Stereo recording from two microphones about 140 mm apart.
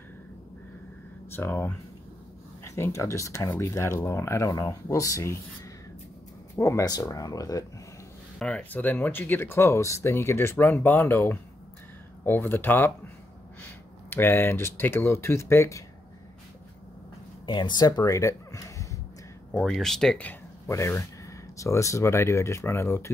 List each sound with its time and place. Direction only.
1.3 s speech: 15° left (ahead or behind)
6.5 s speech: 20° left (ahead or behind)
8.4 s speech: 10° left (ahead or behind)
14.1 s speech: 15° left (ahead or behind)
17.5 s speech: 30° left (ahead or behind)
19.5 s speech: 5° left (ahead or behind)
20.7 s speech: 20° left (ahead or behind)